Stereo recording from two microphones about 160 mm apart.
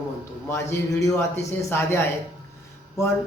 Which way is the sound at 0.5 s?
15° left (ahead or behind).